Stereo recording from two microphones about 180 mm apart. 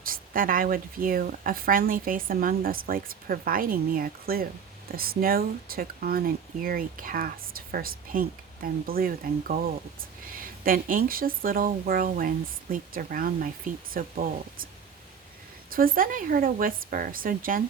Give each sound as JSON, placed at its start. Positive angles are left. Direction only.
{"t": 0.0, "sound": "speech", "side_deg": -50}
{"t": 15.7, "sound": "speech", "side_deg": -55}